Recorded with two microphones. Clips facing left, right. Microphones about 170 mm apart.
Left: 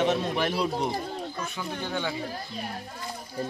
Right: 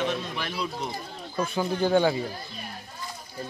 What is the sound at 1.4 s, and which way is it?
Speech, 35° right (ahead or behind).